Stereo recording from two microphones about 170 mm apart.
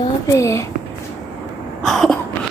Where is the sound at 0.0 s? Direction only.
15° left (ahead or behind).